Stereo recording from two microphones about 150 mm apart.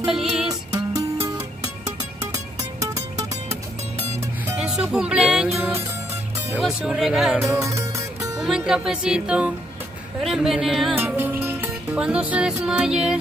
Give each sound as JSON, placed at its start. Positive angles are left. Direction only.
{"t": 0.0, "sound": "music", "side_deg": -5}
{"t": 0.5, "sound": "music", "side_deg": -25}
{"t": 2.3, "sound": "music", "side_deg": -20}
{"t": 4.5, "sound": "speech", "side_deg": -5}
{"t": 5.5, "sound": "music", "side_deg": -15}
{"t": 6.6, "sound": "speech", "side_deg": -5}
{"t": 7.6, "sound": "music", "side_deg": -20}
{"t": 8.4, "sound": "speech", "side_deg": -5}
{"t": 11.0, "sound": "music", "side_deg": -10}